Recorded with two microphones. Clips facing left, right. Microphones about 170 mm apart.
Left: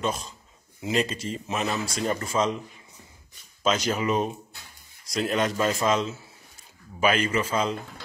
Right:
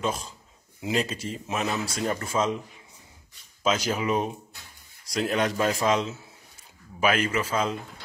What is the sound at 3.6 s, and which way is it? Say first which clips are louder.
Speech: left 1 dB; 10° right (ahead or behind).